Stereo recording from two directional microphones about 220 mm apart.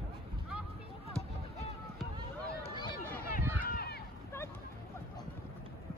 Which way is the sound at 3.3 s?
40° left (ahead or behind).